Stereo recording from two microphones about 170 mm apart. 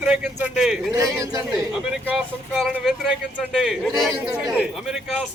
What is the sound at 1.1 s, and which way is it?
Speech, 15° right (ahead or behind).